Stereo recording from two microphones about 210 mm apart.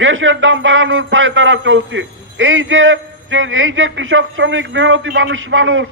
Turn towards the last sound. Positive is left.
turn(degrees=-65)  # may be behind; listen again after turning